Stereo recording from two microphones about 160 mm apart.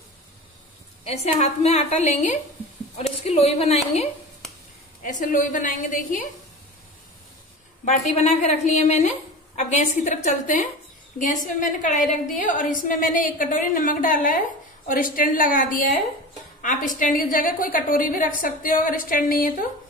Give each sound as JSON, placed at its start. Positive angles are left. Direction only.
{"t": 1.0, "sound": "a woman's voice", "side_deg": 40}
{"t": 5.2, "sound": "a woman's voice", "side_deg": 55}
{"t": 7.8, "sound": "a woman's voice", "side_deg": 45}